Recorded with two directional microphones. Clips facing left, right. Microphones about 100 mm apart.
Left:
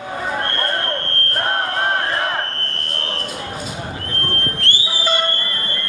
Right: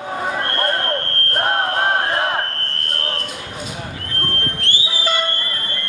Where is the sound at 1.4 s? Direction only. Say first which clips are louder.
Right 2 dB; 20° right (ahead or behind).